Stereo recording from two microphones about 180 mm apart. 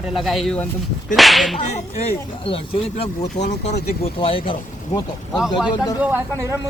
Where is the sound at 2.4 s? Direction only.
30° left (ahead or behind).